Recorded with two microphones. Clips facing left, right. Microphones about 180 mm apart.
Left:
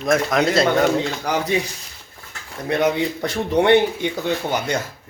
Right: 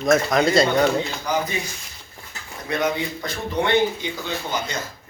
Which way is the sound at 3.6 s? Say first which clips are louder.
Left 5 dB; 70° left (ahead or behind).